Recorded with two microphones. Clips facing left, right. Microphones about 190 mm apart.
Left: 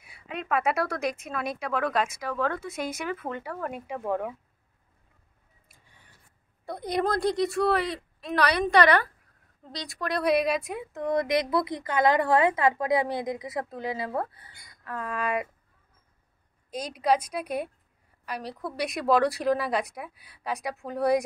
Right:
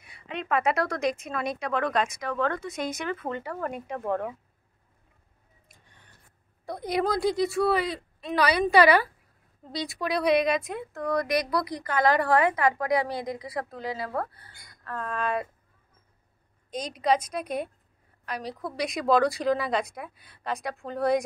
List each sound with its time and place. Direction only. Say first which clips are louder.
0.0 s speech: right 1 dB; 5° left (ahead or behind)
5.7 s a sound: right 1 dB; 5° left (ahead or behind)
6.6 s speech: even; centre (ahead or behind)
10.9 s a woman's voice: left 1 dB; 20° left (ahead or behind)
15.0 s a woman's voice: even; 10° left (ahead or behind)
16.7 s a woman's voice: even; 5° left (ahead or behind)